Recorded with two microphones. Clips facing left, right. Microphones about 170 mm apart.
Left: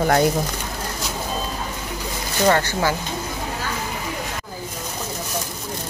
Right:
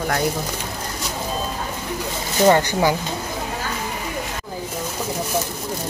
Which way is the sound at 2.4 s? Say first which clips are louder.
Right 3 dB; 15° right (ahead or behind).